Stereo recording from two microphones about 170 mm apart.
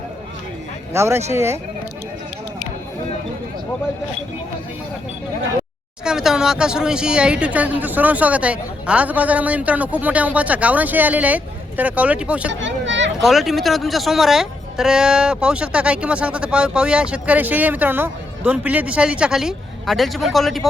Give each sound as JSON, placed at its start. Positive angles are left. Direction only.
{"t": 0.9, "sound": "speech", "side_deg": -15}
{"t": 6.1, "sound": "speech", "side_deg": -5}
{"t": 12.5, "sound": "a sound", "side_deg": -90}
{"t": 13.2, "sound": "speech", "side_deg": 0}